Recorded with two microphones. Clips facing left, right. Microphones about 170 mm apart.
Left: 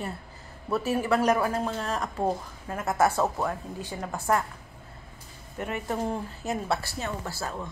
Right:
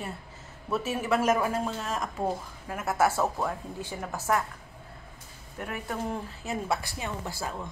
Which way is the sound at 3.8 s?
15° left (ahead or behind).